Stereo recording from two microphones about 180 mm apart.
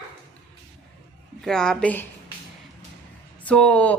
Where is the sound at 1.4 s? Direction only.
5° left (ahead or behind).